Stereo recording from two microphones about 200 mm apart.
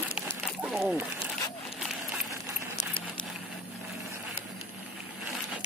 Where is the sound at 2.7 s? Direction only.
20° left (ahead or behind).